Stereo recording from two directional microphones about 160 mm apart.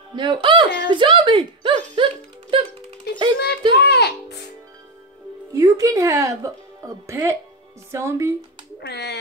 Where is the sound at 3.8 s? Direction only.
90° left.